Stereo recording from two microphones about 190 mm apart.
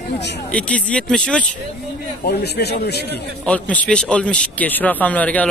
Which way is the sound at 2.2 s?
60° left (ahead or behind).